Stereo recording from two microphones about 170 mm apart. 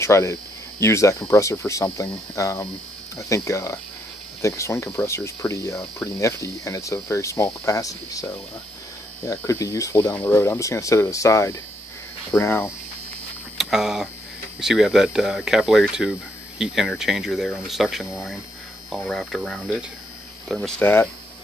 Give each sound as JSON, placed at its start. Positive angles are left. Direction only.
{"t": 0.0, "sound": "speech", "side_deg": 15}
{"t": 13.6, "sound": "speech", "side_deg": 0}